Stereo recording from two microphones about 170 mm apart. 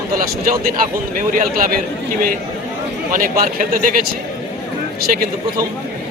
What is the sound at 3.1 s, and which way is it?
Speech, 55° right (ahead or behind).